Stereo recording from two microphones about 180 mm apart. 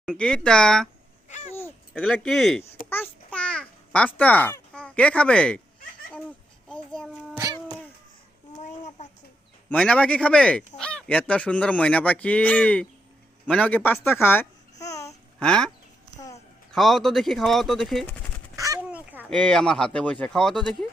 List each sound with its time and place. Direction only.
0.0 s speech: 5° left (ahead or behind)
1.3 s a sound: 40° left (ahead or behind)
1.9 s speech: 5° left (ahead or behind)
2.9 s babbling: 10° left (ahead or behind)
6.1 s a sound: 5° left (ahead or behind)
7.3 s cat: 20° right (ahead or behind)
8.6 s a sound: 40° left (ahead or behind)
9.6 s speech: 5° left (ahead or behind)
15.4 s speech: 5° left (ahead or behind)
16.7 s speech: centre (ahead or behind)
18.5 s a sound: 20° right (ahead or behind)
18.9 s honk: 10° right (ahead or behind)
19.3 s speech: 5° left (ahead or behind)